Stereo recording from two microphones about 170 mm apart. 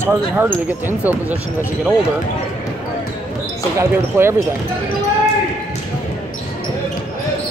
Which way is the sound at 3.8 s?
15° right (ahead or behind).